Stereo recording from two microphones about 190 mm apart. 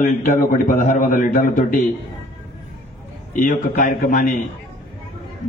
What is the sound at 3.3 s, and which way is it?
A man's voice, 45° left (ahead or behind).